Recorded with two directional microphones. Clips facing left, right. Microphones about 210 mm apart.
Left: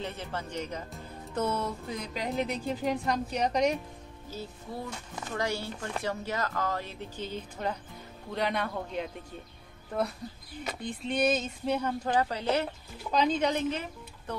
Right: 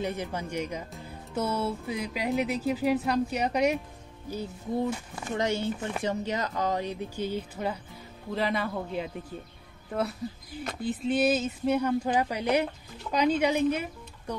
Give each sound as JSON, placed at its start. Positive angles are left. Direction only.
{"t": 0.0, "sound": "speech", "side_deg": -10}
{"t": 4.3, "sound": "speech", "side_deg": -20}